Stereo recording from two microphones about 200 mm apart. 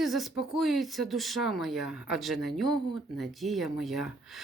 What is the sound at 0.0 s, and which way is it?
Speech, centre (ahead or behind).